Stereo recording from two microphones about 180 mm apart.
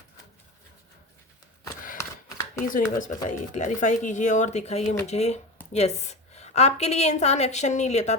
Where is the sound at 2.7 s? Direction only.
45° left (ahead or behind).